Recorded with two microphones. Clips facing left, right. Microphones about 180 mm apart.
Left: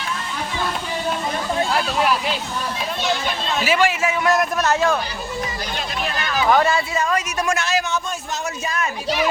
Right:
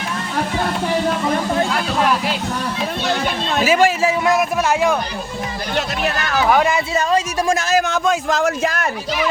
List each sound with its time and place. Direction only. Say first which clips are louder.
3.5 s speech: right 4 dB; 45° right (ahead or behind)
4.3 s speech: left 1 dB; 10° right (ahead or behind)
5.7 s speech: right 8 dB; 65° right (ahead or behind)
6.5 s speech: even; 15° right (ahead or behind)
7.1 s a woman's voice: right 4 dB; 30° right (ahead or behind)
7.9 s a man's voice: right 8 dB; 90° right